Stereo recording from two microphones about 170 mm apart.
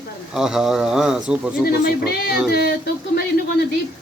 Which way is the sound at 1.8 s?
65° left (ahead or behind).